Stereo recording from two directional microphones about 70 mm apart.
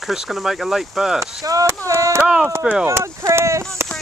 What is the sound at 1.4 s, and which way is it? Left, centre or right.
Speech, right.